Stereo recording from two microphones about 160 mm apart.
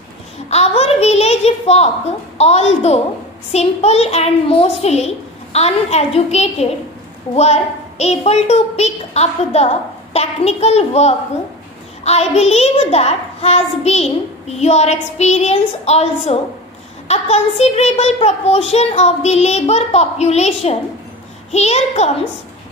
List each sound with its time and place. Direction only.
0.5 s a child's voice: 40° left (ahead or behind)